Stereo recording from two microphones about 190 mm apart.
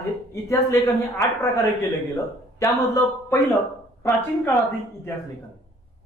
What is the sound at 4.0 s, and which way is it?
Speech, centre (ahead or behind).